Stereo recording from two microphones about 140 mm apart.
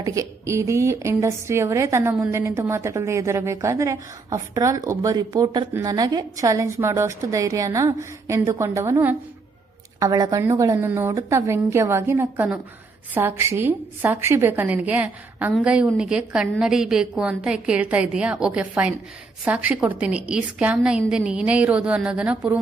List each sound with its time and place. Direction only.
0.0 s a woman's voice: 25° right (ahead or behind)